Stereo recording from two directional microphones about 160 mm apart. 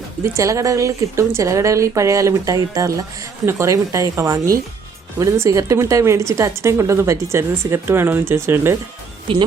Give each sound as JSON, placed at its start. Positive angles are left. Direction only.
{"t": 0.3, "sound": "a woman's voice", "side_deg": -20}
{"t": 9.3, "sound": "speech", "side_deg": -35}